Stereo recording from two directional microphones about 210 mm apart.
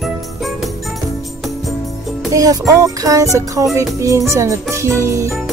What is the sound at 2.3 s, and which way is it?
Jingle bell, 15° right (ahead or behind).